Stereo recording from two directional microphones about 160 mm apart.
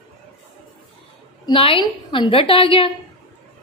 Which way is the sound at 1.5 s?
35° left (ahead or behind).